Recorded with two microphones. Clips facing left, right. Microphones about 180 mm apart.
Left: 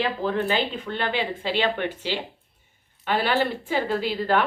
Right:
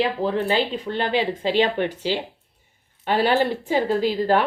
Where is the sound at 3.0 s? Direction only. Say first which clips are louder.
Right 4 dB; 35° right (ahead or behind).